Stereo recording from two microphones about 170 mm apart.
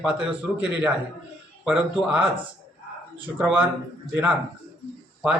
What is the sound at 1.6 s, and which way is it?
Speech, 5° right (ahead or behind).